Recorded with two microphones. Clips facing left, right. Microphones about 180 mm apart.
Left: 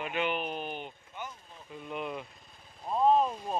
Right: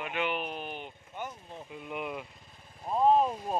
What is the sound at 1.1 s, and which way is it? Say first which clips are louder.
Vehicle: right 5 dB; 50° right (ahead or behind).